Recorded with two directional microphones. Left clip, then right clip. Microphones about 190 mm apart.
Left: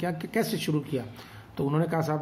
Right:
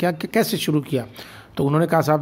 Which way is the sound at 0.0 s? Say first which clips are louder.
Right 9 dB; 45° right (ahead or behind).